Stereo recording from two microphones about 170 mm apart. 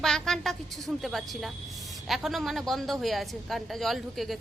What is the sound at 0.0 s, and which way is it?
A woman's voice, centre (ahead or behind).